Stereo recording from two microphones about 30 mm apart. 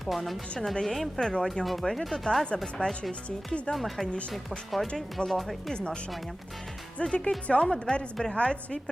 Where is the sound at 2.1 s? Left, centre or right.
Left.